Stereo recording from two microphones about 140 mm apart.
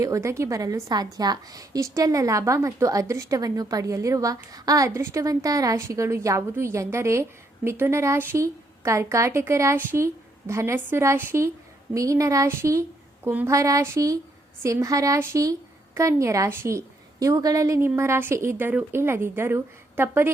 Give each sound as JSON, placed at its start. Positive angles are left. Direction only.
{"t": 0.0, "sound": "a woman's voice", "side_deg": -20}